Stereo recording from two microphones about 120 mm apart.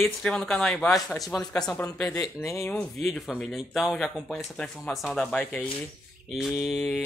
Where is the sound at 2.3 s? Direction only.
25° left (ahead or behind).